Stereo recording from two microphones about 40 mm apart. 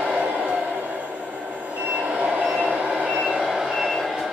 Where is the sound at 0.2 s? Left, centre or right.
Right.